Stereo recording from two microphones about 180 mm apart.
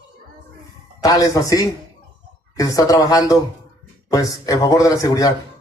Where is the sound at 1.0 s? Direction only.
20° left (ahead or behind).